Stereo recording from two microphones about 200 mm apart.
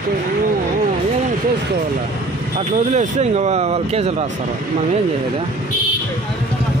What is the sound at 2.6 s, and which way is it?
Speech, 35° right (ahead or behind).